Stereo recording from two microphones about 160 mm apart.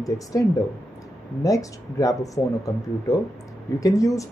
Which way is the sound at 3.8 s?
20° left (ahead or behind).